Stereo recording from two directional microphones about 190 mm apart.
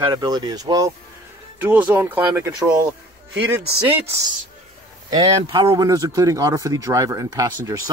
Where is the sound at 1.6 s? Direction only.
10° right (ahead or behind).